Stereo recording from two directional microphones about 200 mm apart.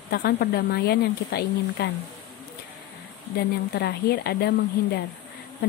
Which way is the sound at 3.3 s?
55° left (ahead or behind).